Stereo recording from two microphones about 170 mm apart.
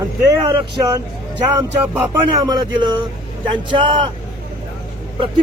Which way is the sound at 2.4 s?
25° right (ahead or behind).